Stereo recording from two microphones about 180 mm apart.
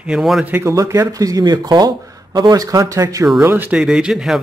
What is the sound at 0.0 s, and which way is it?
Speech, centre (ahead or behind).